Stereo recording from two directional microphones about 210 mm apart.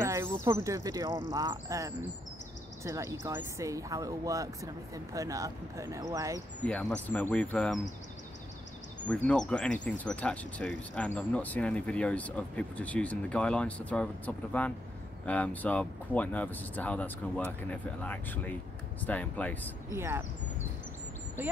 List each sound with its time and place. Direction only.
0.0 s speech: 10° right (ahead or behind)
6.6 s speech: 5° left (ahead or behind)
9.0 s speech: 5° left (ahead or behind)
19.9 s speech: 10° right (ahead or behind)
21.4 s speech: 10° right (ahead or behind)